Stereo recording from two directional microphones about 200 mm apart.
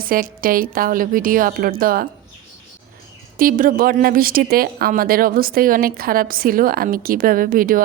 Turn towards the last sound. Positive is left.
turn(degrees=-45)  # may be behind; listen again after turning